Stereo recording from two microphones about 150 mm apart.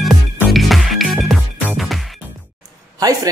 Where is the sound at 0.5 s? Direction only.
Centre (ahead or behind).